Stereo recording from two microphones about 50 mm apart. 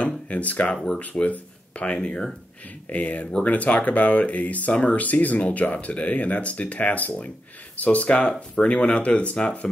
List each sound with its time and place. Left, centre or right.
0.0 s speech: left
2.0 s speech: centre
2.9 s speech: left